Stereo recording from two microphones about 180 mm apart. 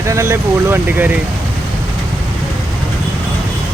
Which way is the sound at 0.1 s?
15° right (ahead or behind).